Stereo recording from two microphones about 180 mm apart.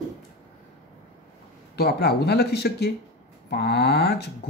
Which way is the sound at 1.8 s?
60° left (ahead or behind).